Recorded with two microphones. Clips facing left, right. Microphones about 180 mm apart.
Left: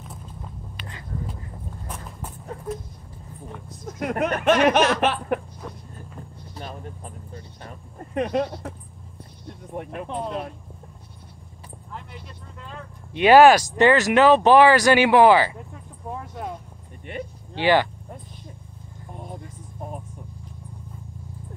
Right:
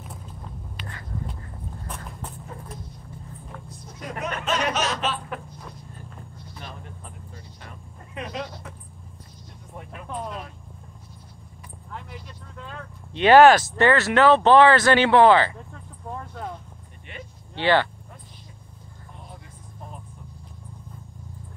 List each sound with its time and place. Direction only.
4.0 s speech: 55° left (ahead or behind)
6.5 s vehicle: 40° left (ahead or behind)
8.1 s speech: 55° left (ahead or behind)
10.0 s speech: 25° left (ahead or behind)
11.9 s vehicle: centre (ahead or behind)
13.1 s speech: 10° left (ahead or behind)
17.6 s speech: 15° left (ahead or behind)
19.1 s vehicle: 45° left (ahead or behind)